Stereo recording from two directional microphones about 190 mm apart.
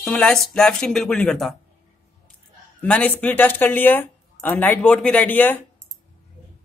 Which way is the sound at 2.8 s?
5° left (ahead or behind).